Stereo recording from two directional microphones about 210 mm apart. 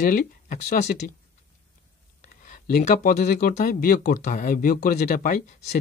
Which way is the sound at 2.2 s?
40° left (ahead or behind).